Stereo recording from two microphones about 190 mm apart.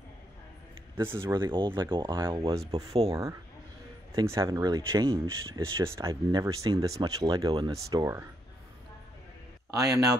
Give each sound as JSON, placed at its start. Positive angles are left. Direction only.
{"t": 0.9, "sound": "speech", "side_deg": -10}
{"t": 1.3, "sound": "speech", "side_deg": -25}
{"t": 9.7, "sound": "speech", "side_deg": -20}